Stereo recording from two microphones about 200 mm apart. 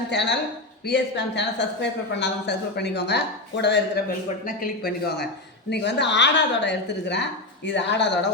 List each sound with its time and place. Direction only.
0.1 s speech: 60° left (ahead or behind)
4.4 s speech: 45° left (ahead or behind)